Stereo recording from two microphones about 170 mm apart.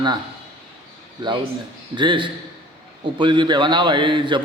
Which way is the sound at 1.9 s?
30° right (ahead or behind).